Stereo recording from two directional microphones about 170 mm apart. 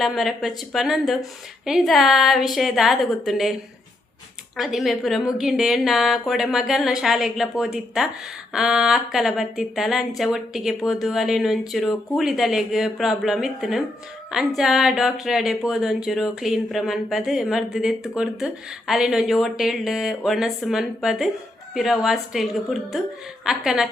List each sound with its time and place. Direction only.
0.0 s speech: centre (ahead or behind)
4.5 s speech: centre (ahead or behind)